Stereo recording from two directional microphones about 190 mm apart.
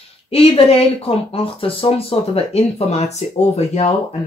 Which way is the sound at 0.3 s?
30° left (ahead or behind).